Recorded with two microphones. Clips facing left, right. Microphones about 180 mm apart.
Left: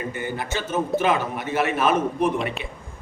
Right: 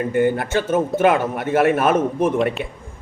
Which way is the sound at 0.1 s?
55° right (ahead or behind).